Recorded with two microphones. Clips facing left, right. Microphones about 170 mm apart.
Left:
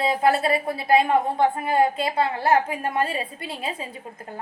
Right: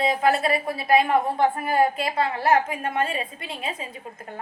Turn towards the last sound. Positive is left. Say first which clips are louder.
# left 1 dB
turn(degrees=35)  # may be behind; listen again after turning